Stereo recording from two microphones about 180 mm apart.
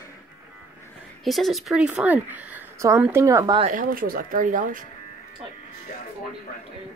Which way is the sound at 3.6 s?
50° right (ahead or behind).